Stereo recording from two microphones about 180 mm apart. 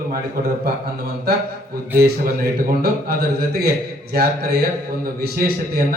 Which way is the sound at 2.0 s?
55° right (ahead or behind).